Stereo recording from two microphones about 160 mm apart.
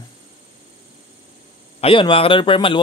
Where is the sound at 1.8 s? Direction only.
35° left (ahead or behind).